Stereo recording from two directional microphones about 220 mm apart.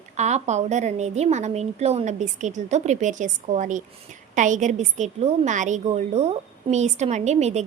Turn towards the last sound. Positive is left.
turn(degrees=-30)  # may be behind; listen again after turning